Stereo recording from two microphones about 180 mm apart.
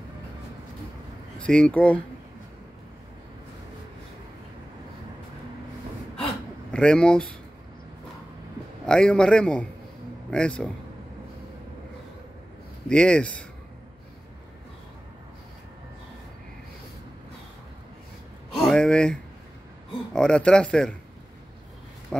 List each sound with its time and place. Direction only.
1.4 s speech: 5° left (ahead or behind)
6.7 s speech: 5° left (ahead or behind)
8.8 s speech: 5° left (ahead or behind)
12.8 s speech: 5° left (ahead or behind)
18.6 s a sound: 5° left (ahead or behind)
20.1 s speech: 5° left (ahead or behind)